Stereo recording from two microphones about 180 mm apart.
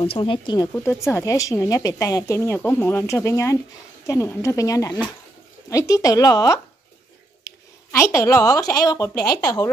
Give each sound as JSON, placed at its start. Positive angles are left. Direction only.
{"t": 0.0, "sound": "speech", "side_deg": 30}